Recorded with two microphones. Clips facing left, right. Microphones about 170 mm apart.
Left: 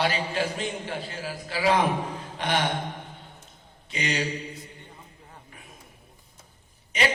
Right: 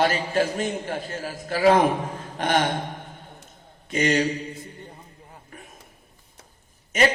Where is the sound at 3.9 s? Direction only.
45° right (ahead or behind).